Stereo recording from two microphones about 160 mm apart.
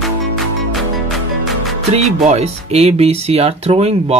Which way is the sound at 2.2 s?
40° right (ahead or behind).